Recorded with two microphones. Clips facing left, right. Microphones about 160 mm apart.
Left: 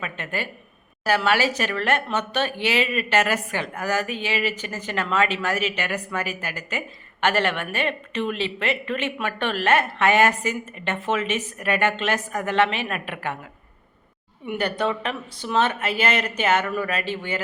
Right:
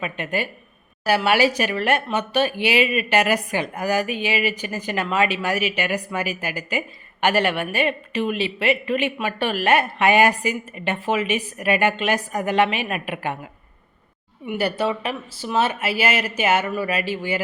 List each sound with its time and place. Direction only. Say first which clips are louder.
0.0 s speech: right 4 dB; 15° right (ahead or behind)
14.4 s speech: right 2 dB; 5° right (ahead or behind)